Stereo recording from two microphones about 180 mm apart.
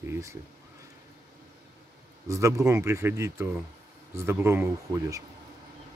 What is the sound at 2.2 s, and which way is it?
Speech, 15° right (ahead or behind).